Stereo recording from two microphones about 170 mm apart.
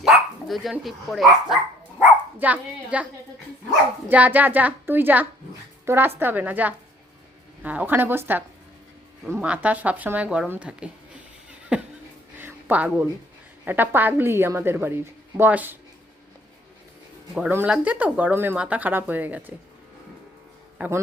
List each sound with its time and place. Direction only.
0.0 s speech: centre (ahead or behind)
4.1 s speech: 10° right (ahead or behind)
12.4 s a sound: 10° right (ahead or behind)
13.7 s speech: 10° right (ahead or behind)
17.3 s speech: 10° right (ahead or behind)
20.7 s a man's voice: 10° right (ahead or behind)